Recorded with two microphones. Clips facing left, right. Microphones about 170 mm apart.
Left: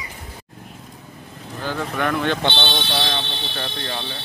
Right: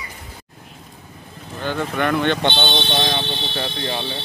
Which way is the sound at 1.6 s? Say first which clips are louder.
Right 2 dB; 5° left (ahead or behind).